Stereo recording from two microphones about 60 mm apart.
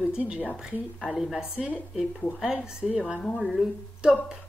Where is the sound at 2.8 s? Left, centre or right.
Centre.